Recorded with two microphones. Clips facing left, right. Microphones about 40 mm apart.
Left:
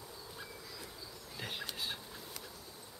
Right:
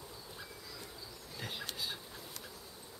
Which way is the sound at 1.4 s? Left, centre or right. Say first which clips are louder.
Left 1 dB; centre.